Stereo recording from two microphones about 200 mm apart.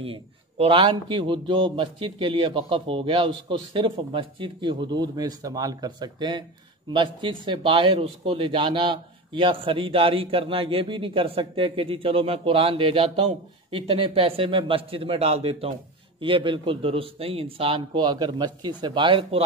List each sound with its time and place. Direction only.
0.0 s a man's voice: 30° right (ahead or behind)